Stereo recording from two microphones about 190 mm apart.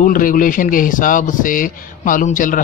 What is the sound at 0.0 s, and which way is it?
A man's voice, 45° left (ahead or behind).